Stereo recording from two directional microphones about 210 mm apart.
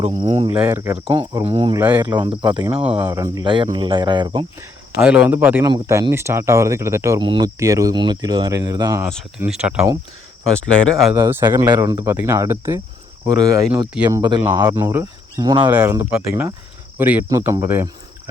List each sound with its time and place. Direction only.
0.7 s speech: 15° right (ahead or behind)
1.5 s speech: 30° right (ahead or behind)
1.7 s speech: 10° right (ahead or behind)
2.0 s speech: 20° right (ahead or behind)
4.9 s speech: 5° right (ahead or behind)
9.4 s speech: 5° right (ahead or behind)
11.1 s speech: 10° right (ahead or behind)
13.8 s speech: 5° right (ahead or behind)
14.2 s speech: 20° right (ahead or behind)